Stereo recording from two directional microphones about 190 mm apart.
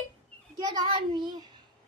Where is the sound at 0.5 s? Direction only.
20° right (ahead or behind).